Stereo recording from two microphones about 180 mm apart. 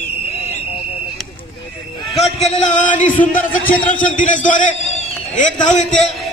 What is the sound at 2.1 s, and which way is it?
A man's voice, 35° left (ahead or behind).